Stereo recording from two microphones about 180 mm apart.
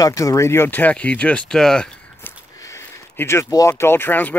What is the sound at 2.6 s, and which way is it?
Speech, 15° left (ahead or behind).